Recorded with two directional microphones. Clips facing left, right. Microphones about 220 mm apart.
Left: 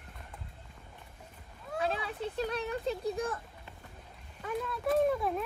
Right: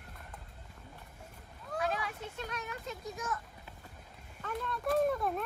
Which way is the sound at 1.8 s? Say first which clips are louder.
Left 3 dB; 30° left (ahead or behind).